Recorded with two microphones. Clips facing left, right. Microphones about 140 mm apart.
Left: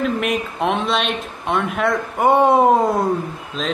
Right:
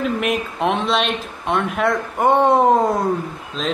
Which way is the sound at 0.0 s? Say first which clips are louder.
Even; centre (ahead or behind).